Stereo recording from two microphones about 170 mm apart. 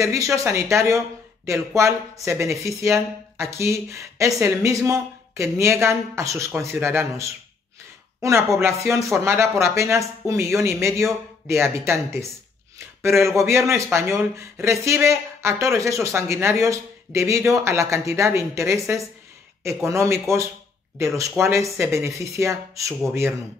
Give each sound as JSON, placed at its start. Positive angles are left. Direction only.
{"t": 0.0, "sound": "speech", "side_deg": -15}
{"t": 8.2, "sound": "chopping", "side_deg": -15}
{"t": 8.5, "sound": "speech", "side_deg": -15}